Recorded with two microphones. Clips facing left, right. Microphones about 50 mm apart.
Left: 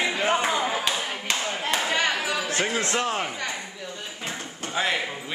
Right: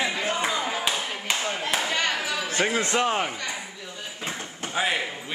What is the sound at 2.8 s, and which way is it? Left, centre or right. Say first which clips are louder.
Speech: right 2 dB; right.